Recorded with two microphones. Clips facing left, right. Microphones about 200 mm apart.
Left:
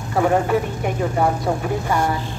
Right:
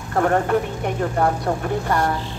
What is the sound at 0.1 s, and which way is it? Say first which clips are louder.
Speech: left 1 dB; 5° left (ahead or behind).